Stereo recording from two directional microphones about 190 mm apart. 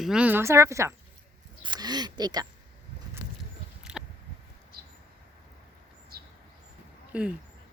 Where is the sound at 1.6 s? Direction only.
20° right (ahead or behind).